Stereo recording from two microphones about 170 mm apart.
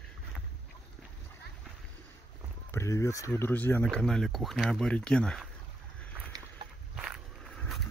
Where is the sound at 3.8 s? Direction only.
5° left (ahead or behind).